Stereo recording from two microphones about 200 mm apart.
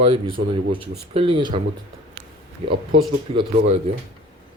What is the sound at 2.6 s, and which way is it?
Speech, 25° right (ahead or behind).